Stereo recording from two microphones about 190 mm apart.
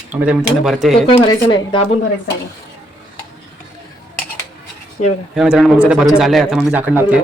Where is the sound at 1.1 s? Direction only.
20° left (ahead or behind).